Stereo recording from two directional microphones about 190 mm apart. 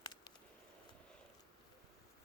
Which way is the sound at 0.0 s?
20° left (ahead or behind).